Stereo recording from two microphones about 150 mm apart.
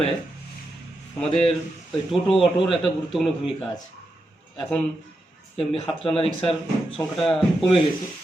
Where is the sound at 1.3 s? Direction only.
40° left (ahead or behind).